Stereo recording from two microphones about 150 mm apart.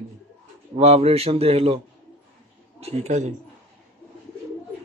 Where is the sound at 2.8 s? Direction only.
50° right (ahead or behind).